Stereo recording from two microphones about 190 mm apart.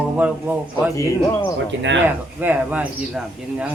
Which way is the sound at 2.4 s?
10° right (ahead or behind).